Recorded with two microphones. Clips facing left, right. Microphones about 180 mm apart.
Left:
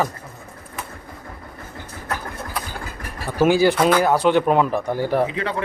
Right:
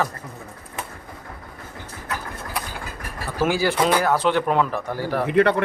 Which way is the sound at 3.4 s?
20° left (ahead or behind).